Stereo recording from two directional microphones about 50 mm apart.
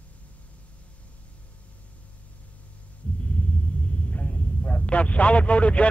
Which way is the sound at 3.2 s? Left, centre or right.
Left.